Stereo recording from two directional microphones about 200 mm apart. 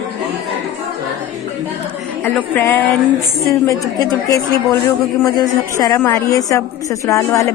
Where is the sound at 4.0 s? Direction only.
15° left (ahead or behind).